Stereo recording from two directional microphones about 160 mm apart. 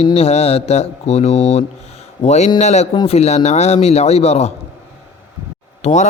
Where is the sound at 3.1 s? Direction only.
40° left (ahead or behind).